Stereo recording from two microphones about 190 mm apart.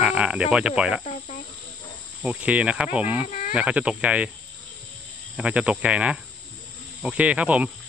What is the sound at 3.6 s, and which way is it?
Speech, 5° right (ahead or behind).